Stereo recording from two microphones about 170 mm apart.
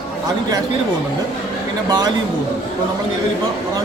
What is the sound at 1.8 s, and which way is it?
Speech, 20° right (ahead or behind).